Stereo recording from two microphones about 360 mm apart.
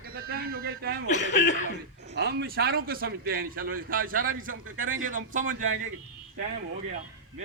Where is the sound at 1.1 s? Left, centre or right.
Centre.